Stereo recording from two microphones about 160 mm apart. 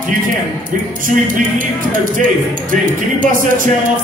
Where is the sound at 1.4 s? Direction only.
60° right (ahead or behind).